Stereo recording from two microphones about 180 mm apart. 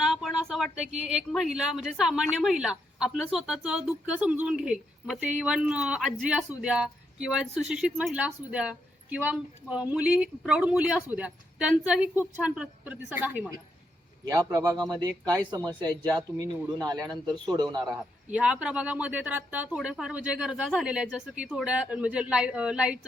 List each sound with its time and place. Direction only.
0.0 s a sound: centre (ahead or behind)
1.0 s speech: centre (ahead or behind); by 17.7 s 25° right (ahead or behind)
17.9 s speech: 5° right (ahead or behind)